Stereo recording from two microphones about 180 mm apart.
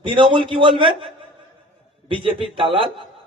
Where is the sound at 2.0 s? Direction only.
30° right (ahead or behind).